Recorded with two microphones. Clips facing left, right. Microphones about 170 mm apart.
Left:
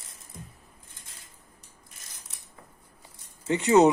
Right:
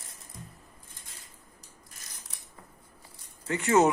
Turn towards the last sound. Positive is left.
turn(degrees=20)  # may be behind; listen again after turning